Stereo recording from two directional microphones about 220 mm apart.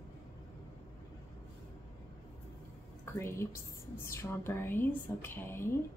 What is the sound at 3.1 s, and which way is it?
A woman's voice, 10° left (ahead or behind).